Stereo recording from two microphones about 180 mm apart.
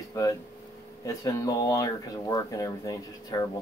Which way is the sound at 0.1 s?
15° left (ahead or behind).